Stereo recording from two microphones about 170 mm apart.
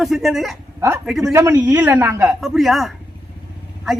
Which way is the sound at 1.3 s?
20° right (ahead or behind).